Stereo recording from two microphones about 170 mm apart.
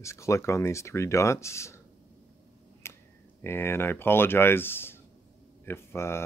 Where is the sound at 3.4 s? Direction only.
15° left (ahead or behind).